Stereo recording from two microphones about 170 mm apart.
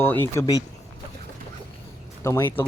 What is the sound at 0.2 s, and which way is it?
Speech, 20° left (ahead or behind).